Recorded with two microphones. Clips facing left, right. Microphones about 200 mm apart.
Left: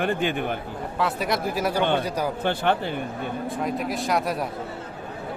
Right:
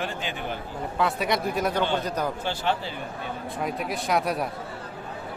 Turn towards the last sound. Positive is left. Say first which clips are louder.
# left 1 dB
turn(degrees=0)  # may be behind; listen again after turning